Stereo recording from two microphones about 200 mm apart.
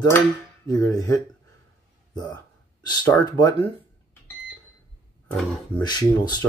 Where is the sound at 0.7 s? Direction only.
15° left (ahead or behind).